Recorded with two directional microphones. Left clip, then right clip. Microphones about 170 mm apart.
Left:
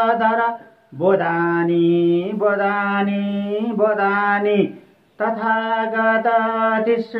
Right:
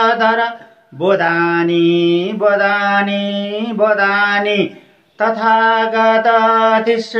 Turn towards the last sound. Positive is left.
turn(degrees=-15)  # may be behind; listen again after turning